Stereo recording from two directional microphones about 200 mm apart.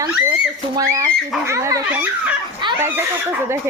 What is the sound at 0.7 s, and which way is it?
A child's voice, 15° right (ahead or behind).